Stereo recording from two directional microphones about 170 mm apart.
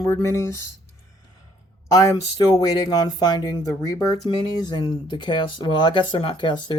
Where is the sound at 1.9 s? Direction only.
20° left (ahead or behind).